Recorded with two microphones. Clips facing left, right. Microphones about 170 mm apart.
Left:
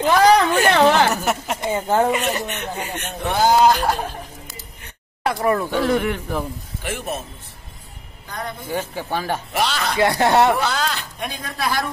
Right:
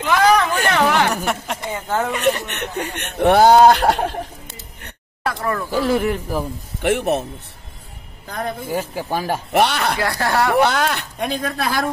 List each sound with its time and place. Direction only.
0.0 s a sound: 35° left (ahead or behind)
1.1 s a sound: centre (ahead or behind)
1.8 s speech: 30° left (ahead or behind)
2.4 s speech: 70° right (ahead or behind)
5.2 s speech: 20° left (ahead or behind)
5.7 s speech: centre (ahead or behind)
6.8 s speech: 65° right (ahead or behind)
8.4 s a man's voice: 55° right (ahead or behind)
8.6 s speech: 10° right (ahead or behind)
9.5 s speech: 60° right (ahead or behind)
9.9 s speech: 20° left (ahead or behind)
10.6 s speech: 60° right (ahead or behind)